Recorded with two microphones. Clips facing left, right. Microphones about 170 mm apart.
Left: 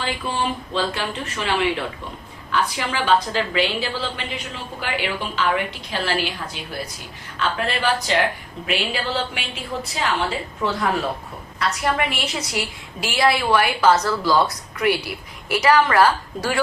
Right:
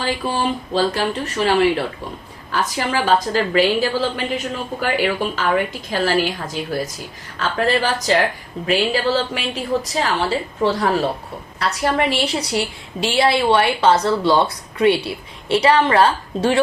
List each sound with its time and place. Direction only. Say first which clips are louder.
0.0 s a woman's voice: right 4 dB; 40° right (ahead or behind)